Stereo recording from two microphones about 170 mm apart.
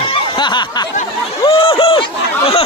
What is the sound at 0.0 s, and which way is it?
Snicker, 30° left (ahead or behind).